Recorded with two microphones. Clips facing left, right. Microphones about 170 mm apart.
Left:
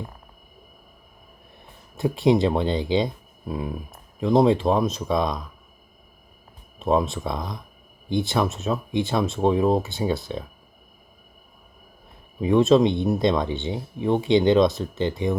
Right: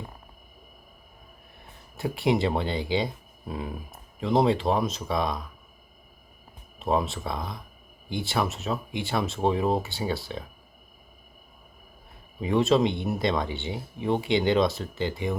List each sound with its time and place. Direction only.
2.0 s speech: 20° left (ahead or behind)
4.2 s speech: 15° left (ahead or behind)
6.8 s speech: 15° left (ahead or behind)
12.4 s speech: 15° right (ahead or behind)
12.9 s speech: 20° left (ahead or behind)